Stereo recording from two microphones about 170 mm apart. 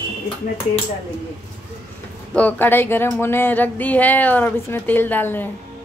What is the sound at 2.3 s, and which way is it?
Speech, 10° left (ahead or behind).